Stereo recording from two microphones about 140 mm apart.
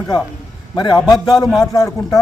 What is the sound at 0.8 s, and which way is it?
Speech, 30° left (ahead or behind).